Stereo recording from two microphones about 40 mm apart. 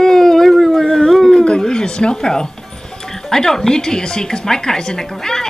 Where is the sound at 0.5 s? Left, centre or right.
Centre.